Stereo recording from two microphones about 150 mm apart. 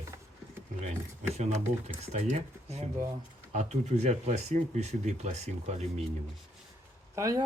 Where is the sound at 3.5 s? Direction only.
50° right (ahead or behind).